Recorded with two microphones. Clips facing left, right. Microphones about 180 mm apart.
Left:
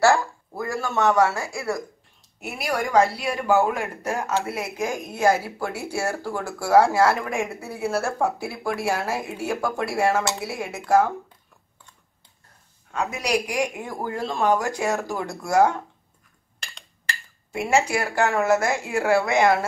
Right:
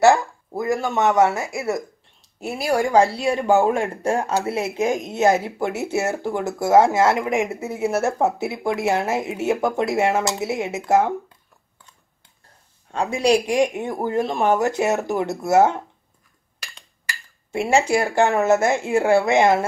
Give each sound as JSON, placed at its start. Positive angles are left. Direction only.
{"t": 0.0, "sound": "speech", "side_deg": -20}
{"t": 12.9, "sound": "speech", "side_deg": -30}
{"t": 17.5, "sound": "speech", "side_deg": -30}